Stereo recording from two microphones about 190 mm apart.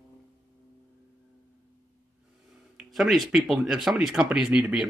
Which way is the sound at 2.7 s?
Centre (ahead or behind).